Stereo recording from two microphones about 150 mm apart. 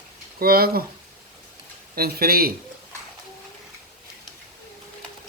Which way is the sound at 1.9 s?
85° right.